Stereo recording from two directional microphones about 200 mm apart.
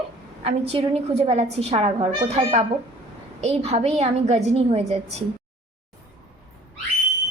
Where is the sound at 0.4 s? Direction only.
30° right (ahead or behind).